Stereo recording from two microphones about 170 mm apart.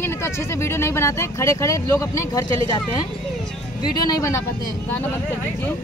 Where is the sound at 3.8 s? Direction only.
20° left (ahead or behind).